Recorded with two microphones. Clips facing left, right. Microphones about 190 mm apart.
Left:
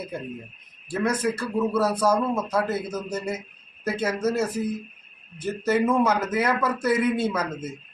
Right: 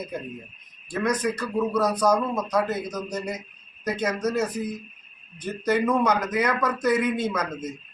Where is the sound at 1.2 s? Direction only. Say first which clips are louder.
Left 1 dB; 10° left (ahead or behind).